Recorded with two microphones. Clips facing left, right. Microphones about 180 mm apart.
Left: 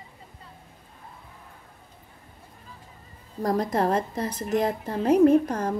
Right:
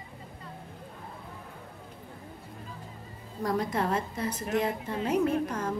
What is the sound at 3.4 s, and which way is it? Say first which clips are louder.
A woman's voice: left 5 dB; 40° left (ahead or behind).